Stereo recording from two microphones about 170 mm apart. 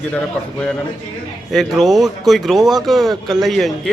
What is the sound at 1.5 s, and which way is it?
Speech, centre (ahead or behind).